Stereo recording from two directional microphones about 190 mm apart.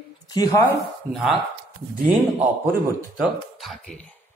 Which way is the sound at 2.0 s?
10° right (ahead or behind).